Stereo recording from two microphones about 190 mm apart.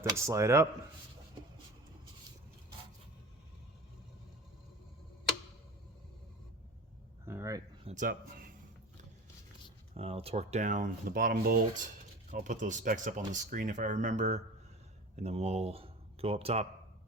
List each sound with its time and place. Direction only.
0.0 s speech: 15° right (ahead or behind)
7.3 s a sound: 15° right (ahead or behind)
7.9 s speech: 45° right (ahead or behind)
9.9 s speech: 30° right (ahead or behind)